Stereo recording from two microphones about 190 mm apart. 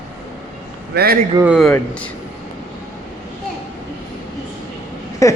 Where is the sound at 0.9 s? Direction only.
55° right (ahead or behind).